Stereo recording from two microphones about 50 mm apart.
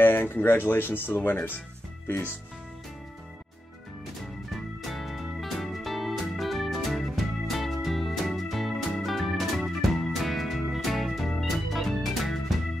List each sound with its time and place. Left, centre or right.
0.0 s speech: left
4.8 s music: centre